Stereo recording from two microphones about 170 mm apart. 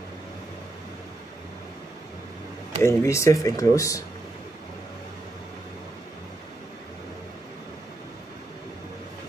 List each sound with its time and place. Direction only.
2.8 s speech: 15° left (ahead or behind)